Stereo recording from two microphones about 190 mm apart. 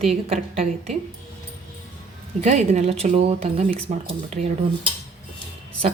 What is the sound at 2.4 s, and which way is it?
A woman's voice, 35° right (ahead or behind).